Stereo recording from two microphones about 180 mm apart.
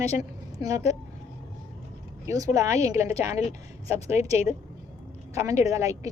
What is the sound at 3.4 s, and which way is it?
A woman's voice, 35° left (ahead or behind).